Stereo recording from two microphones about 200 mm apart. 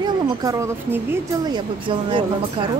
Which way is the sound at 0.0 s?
20° right (ahead or behind).